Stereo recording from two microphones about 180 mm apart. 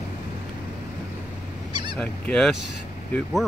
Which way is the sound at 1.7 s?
25° right (ahead or behind).